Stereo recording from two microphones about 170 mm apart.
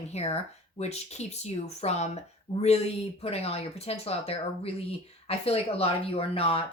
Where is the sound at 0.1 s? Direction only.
40° left (ahead or behind).